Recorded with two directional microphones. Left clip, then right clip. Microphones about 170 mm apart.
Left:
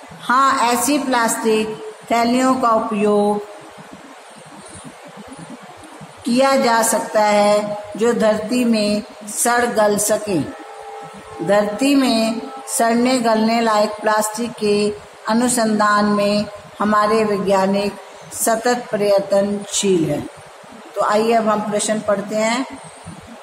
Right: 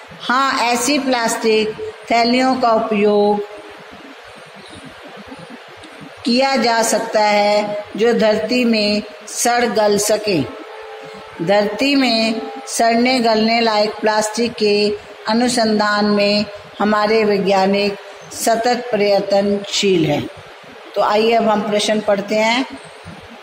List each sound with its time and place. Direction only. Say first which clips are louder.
0.2 s a woman's voice: left 1 dB; 15° right (ahead or behind)
6.2 s a woman's voice: even; 10° right (ahead or behind)
11.4 s a woman's voice: right 1 dB; 10° right (ahead or behind)